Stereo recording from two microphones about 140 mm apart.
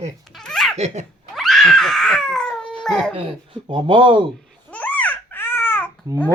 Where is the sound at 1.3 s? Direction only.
Centre (ahead or behind).